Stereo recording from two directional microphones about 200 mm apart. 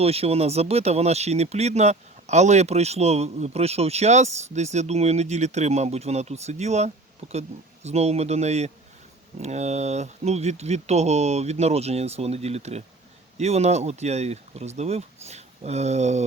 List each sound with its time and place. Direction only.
0.0 s speech: 30° right (ahead or behind)